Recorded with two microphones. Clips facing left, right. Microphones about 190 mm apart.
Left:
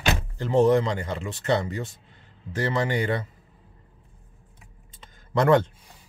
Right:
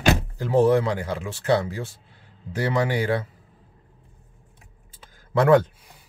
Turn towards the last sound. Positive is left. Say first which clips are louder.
# right 2 dB
turn(degrees=-5)  # may be behind; listen again after turning